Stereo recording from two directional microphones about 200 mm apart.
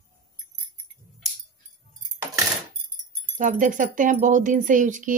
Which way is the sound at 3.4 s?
40° right (ahead or behind).